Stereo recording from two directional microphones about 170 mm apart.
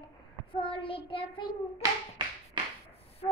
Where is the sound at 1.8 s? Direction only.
25° right (ahead or behind).